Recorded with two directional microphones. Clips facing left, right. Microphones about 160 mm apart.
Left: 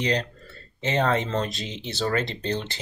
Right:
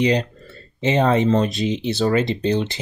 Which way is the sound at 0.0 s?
15° right (ahead or behind).